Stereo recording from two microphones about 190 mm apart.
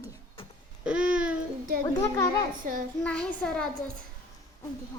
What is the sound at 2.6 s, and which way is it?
Speech, 45° right (ahead or behind).